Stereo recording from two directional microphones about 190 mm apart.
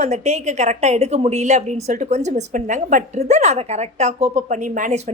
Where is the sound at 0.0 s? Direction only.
35° right (ahead or behind).